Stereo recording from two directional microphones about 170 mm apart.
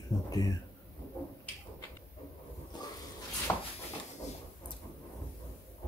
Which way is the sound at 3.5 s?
10° left (ahead or behind).